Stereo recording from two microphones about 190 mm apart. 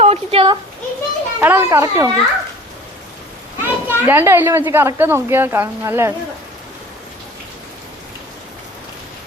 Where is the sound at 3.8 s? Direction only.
10° right (ahead or behind).